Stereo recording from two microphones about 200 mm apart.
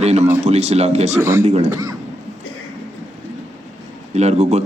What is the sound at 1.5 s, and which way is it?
Speech, 35° right (ahead or behind).